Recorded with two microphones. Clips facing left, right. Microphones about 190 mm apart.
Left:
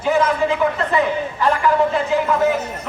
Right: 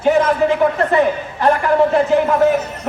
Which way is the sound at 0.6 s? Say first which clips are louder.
Right 4 dB; 45° right (ahead or behind).